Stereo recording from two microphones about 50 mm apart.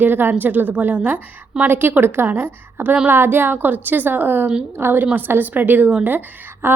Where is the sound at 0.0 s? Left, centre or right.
Right.